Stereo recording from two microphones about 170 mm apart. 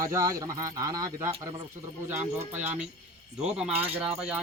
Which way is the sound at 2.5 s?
10° right (ahead or behind).